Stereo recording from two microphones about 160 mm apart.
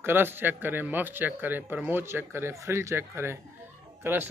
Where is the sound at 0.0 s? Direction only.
15° right (ahead or behind).